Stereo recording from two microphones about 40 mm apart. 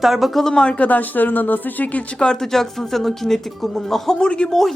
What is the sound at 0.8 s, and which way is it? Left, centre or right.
Speech, left.